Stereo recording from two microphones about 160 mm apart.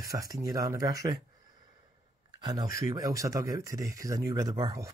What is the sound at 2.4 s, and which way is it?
Speech, 25° right (ahead or behind).